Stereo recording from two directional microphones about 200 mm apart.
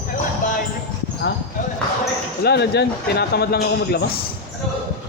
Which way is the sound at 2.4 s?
55° left (ahead or behind).